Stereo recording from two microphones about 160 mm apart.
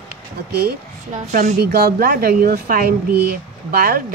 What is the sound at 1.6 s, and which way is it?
Speech, 75° right (ahead or behind).